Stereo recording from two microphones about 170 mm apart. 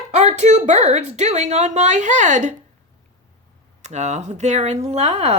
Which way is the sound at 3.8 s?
40° right (ahead or behind).